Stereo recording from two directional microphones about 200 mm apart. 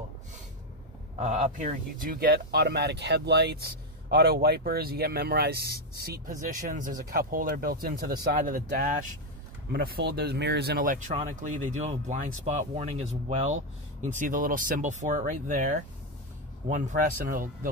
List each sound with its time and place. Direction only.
1.2 s speech: 35° right (ahead or behind)
11.1 s speech: 35° right (ahead or behind)